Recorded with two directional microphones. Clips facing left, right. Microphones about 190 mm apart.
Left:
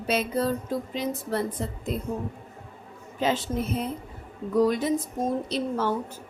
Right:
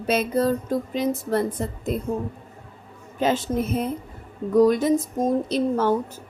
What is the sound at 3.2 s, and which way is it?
A woman's voice, 45° right (ahead or behind).